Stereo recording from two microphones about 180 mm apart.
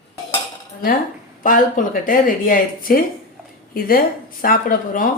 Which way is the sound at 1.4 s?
50° left (ahead or behind).